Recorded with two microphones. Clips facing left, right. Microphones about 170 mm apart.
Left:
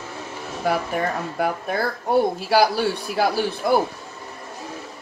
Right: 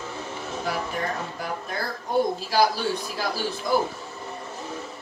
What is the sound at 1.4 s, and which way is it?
Speech, 65° left (ahead or behind).